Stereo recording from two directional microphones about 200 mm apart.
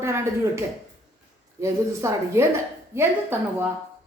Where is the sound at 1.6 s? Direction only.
15° right (ahead or behind).